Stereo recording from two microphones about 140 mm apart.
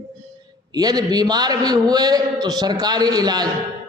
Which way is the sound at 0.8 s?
30° right (ahead or behind).